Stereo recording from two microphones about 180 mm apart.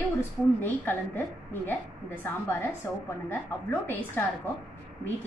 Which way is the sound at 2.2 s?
10° left (ahead or behind).